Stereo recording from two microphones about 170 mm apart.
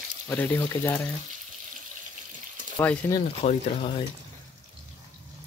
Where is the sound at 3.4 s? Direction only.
35° left (ahead or behind).